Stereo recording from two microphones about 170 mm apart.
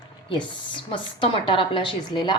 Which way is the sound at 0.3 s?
30° left (ahead or behind).